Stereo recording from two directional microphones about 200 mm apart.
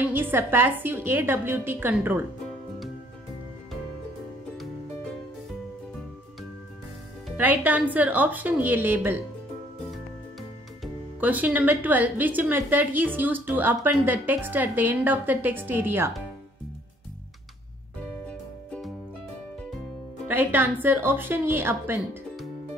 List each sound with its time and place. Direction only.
0.1 s speech: 10° right (ahead or behind)
7.2 s speech: 10° right (ahead or behind)
10.8 s speech: 10° right (ahead or behind)
20.2 s speech: 10° right (ahead or behind)